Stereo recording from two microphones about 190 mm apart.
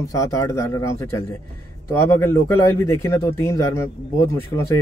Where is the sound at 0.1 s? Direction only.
15° left (ahead or behind).